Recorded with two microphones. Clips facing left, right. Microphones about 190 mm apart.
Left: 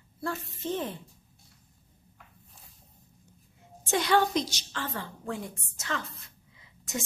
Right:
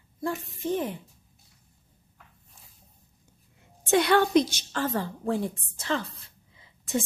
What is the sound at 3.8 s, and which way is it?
A woman's voice, 60° right (ahead or behind).